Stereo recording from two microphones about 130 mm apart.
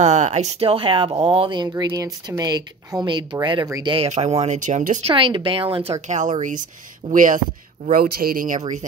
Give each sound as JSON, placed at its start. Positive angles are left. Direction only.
{"t": 0.0, "sound": "speech", "side_deg": -60}
{"t": 4.1, "sound": "speech", "side_deg": -60}
{"t": 5.0, "sound": "speech", "side_deg": -40}
{"t": 6.0, "sound": "speech", "side_deg": -65}
{"t": 7.1, "sound": "speech", "side_deg": -90}